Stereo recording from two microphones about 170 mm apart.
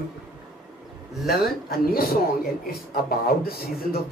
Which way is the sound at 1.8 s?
60° left (ahead or behind).